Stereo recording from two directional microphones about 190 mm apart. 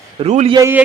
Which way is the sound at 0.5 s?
15° right (ahead or behind).